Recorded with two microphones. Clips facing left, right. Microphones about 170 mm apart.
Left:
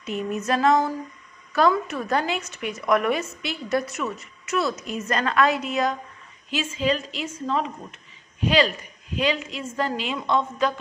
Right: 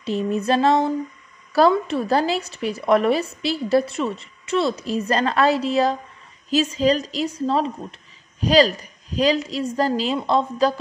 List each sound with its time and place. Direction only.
0.0 s a woman's voice: 30° right (ahead or behind)